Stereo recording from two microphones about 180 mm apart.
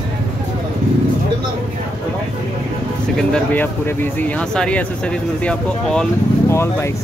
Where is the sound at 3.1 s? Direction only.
5° left (ahead or behind).